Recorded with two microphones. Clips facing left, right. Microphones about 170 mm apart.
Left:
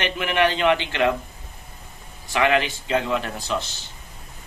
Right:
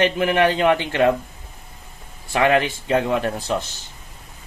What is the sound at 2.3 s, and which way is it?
Speech, 40° right (ahead or behind).